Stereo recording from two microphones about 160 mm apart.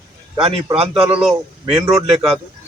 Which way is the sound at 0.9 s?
5° right (ahead or behind).